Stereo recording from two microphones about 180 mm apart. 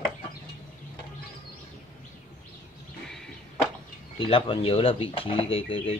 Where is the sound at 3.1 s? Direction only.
Centre (ahead or behind).